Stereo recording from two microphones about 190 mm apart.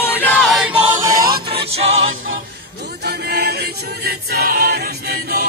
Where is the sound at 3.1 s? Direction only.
55° right (ahead or behind).